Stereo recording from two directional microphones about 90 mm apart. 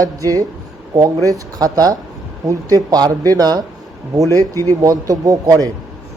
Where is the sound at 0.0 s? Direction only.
40° right (ahead or behind).